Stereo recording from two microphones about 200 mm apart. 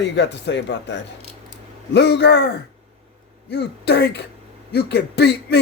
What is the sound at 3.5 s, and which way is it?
A man's voice, 55° left (ahead or behind).